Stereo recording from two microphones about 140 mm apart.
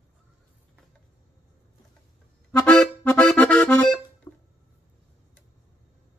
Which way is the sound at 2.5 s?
10° left (ahead or behind).